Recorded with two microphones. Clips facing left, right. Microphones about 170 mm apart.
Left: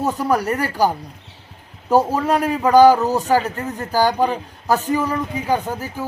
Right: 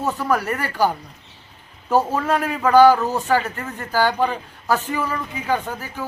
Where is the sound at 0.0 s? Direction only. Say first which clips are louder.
Left 2 dB; 15° left (ahead or behind).